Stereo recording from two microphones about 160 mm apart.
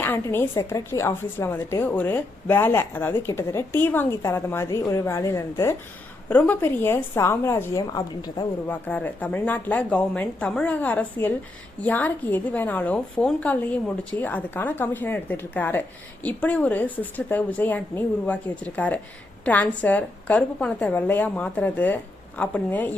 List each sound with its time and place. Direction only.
0.0 s a woman's voice: 15° left (ahead or behind)
8.6 s a woman's voice: 10° left (ahead or behind)